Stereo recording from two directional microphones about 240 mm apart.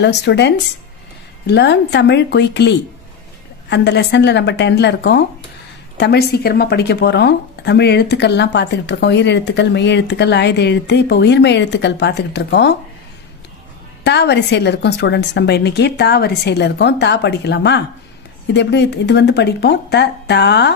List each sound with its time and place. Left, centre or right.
0.0 s speech: left
14.0 s speech: left